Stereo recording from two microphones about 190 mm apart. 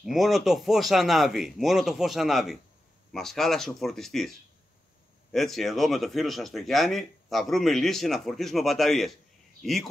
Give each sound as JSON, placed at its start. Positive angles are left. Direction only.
{"t": 0.0, "sound": "speech", "side_deg": 0}
{"t": 5.3, "sound": "speech", "side_deg": 0}